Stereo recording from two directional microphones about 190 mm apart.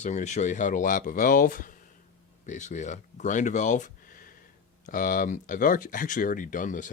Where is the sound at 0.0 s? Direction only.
40° left (ahead or behind).